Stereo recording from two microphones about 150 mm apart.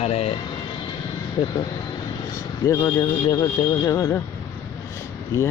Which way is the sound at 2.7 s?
20° left (ahead or behind).